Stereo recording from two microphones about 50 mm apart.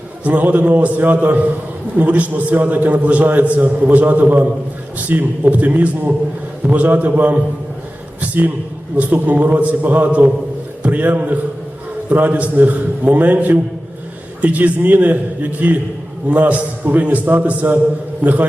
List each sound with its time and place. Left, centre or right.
0.3 s a man's voice: right